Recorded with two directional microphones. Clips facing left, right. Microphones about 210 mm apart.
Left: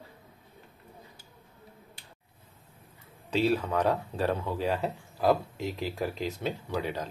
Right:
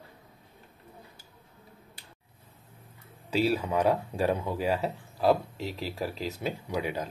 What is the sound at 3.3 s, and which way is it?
Speech, 10° right (ahead or behind).